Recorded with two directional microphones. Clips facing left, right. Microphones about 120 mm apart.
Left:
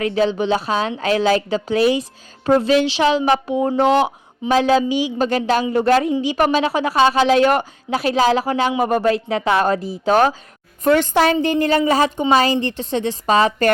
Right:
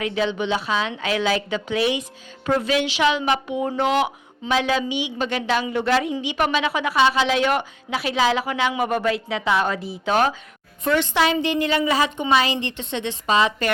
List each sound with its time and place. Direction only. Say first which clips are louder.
0.0 s a woman's voice: left 5 dB; 40° left (ahead or behind)